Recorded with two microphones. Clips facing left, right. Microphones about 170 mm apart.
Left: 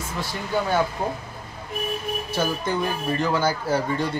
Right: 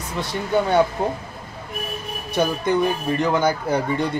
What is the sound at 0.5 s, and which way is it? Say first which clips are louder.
Speech: right 5 dB; 25° right (ahead or behind).